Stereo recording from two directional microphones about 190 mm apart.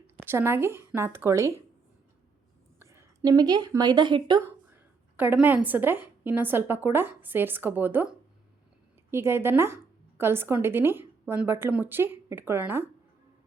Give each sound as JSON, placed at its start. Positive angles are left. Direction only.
{"t": 0.2, "sound": "speech", "side_deg": -10}
{"t": 2.7, "sound": "a woman's voice", "side_deg": -15}
{"t": 4.7, "sound": "a woman's voice", "side_deg": -10}
{"t": 9.0, "sound": "speech", "side_deg": -15}